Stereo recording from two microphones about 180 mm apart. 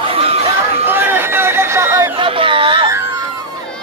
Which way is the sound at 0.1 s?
35° right (ahead or behind).